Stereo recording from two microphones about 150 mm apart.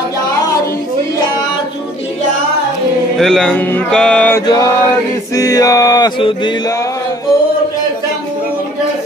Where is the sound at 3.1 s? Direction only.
5° left (ahead or behind).